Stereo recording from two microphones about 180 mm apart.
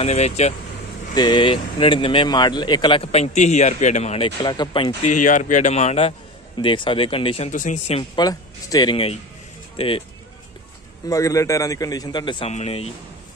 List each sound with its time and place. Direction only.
0.0 s speech: 35° left (ahead or behind)
1.1 s speech: 25° left (ahead or behind)
5.2 s speech: 45° left (ahead or behind)
7.5 s a man's voice: 45° left (ahead or behind)
8.2 s speech: 20° left (ahead or behind)
11.1 s speech: 15° left (ahead or behind); by 12.9 s 35° left (ahead or behind)